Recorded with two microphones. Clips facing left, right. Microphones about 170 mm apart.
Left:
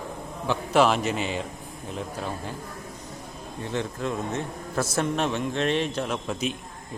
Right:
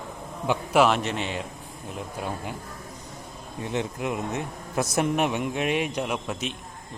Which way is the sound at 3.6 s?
15° right (ahead or behind).